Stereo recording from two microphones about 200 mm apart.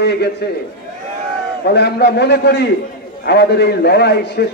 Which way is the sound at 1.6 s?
55° left (ahead or behind).